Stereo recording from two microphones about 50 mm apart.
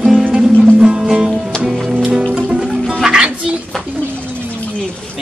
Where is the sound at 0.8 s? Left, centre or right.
Centre.